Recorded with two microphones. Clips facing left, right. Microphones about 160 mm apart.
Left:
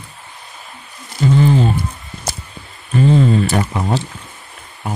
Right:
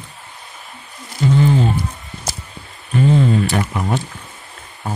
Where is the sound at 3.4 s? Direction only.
40° left (ahead or behind).